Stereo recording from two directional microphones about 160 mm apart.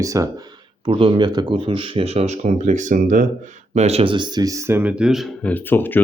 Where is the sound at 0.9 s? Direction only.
35° right (ahead or behind); by 3.2 s 55° right (ahead or behind).